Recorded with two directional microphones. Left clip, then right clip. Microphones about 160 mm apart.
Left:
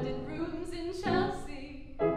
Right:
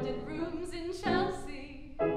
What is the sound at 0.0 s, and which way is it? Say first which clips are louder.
Music: even; 15° right (ahead or behind).